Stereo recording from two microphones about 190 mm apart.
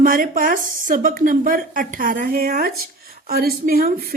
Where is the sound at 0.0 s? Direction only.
50° right (ahead or behind).